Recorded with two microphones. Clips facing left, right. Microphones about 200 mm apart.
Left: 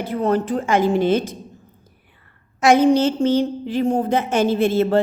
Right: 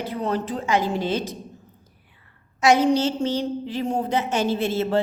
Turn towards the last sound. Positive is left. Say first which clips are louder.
# left 5 dB
turn(degrees=55)  # may be behind; listen again after turning